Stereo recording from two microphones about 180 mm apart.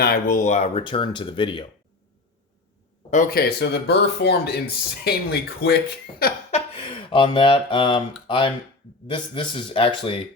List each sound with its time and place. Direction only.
0.0 s speech: 55° left (ahead or behind); by 1.6 s 25° left (ahead or behind)
3.1 s speech: 50° left (ahead or behind)
6.5 s a sound: 30° left (ahead or behind)
8.3 s speech: 30° left (ahead or behind)